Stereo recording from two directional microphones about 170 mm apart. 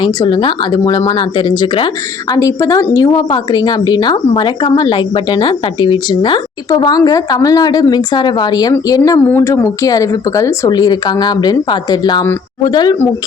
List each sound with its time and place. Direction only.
0.0 s a woman's voice: 25° left (ahead or behind)